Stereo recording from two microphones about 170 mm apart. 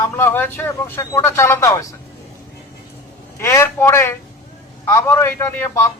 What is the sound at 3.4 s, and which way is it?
A man's voice, 15° left (ahead or behind).